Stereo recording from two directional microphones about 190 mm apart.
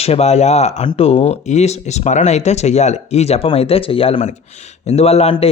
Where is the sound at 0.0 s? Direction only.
35° left (ahead or behind).